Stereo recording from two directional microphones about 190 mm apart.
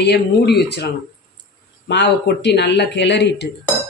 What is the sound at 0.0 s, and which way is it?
Speech, 60° left (ahead or behind).